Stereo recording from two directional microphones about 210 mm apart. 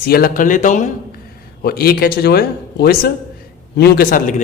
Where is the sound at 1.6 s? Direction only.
45° left (ahead or behind).